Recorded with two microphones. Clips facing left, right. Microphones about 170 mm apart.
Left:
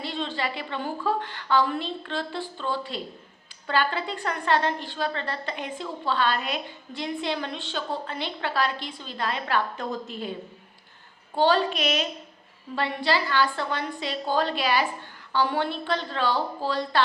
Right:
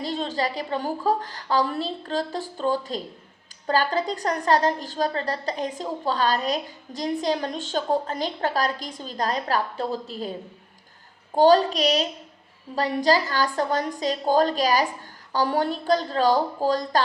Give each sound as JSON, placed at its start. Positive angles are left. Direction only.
{"t": 0.0, "sound": "a woman's voice", "side_deg": -40}
{"t": 11.3, "sound": "a woman's voice", "side_deg": -40}